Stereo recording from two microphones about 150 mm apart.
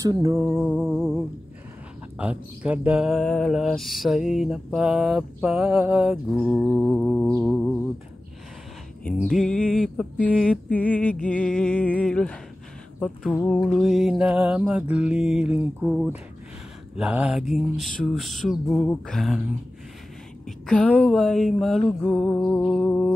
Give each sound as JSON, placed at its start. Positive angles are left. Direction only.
{"t": 0.0, "sound": "music", "side_deg": -20}
{"t": 0.5, "sound": "speech", "side_deg": 5}
{"t": 2.1, "sound": "speech", "side_deg": -10}
{"t": 9.3, "sound": "speech", "side_deg": 5}
{"t": 20.4, "sound": "speech", "side_deg": 5}